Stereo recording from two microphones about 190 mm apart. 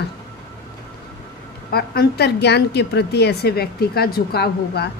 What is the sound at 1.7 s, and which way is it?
A woman's voice, 55° left (ahead or behind).